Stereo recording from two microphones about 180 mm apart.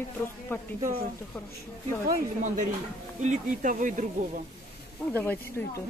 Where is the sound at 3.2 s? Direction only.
45° right (ahead or behind).